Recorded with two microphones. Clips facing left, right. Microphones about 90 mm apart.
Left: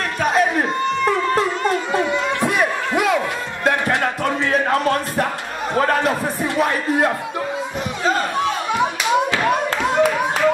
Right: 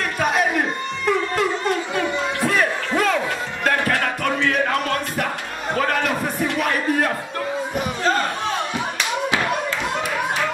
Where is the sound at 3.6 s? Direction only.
25° left (ahead or behind).